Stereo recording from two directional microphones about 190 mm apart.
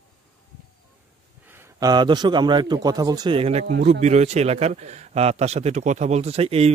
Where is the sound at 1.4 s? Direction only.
10° right (ahead or behind).